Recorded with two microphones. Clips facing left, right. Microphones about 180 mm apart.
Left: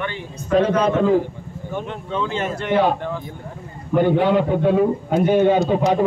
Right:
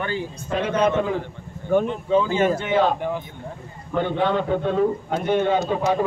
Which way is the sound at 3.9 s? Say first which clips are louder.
Left 5 dB; 10° left (ahead or behind).